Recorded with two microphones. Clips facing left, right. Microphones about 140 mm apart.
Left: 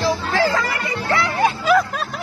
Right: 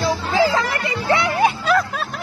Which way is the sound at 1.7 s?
Centre (ahead or behind).